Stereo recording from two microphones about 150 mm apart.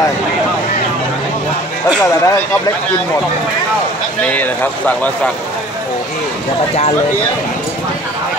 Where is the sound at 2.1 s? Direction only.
20° left (ahead or behind).